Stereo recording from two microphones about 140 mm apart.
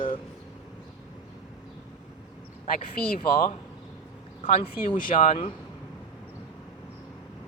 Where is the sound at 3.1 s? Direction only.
85° left.